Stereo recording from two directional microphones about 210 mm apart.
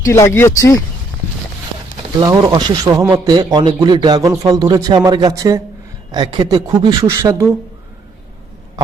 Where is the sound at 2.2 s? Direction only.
15° right (ahead or behind).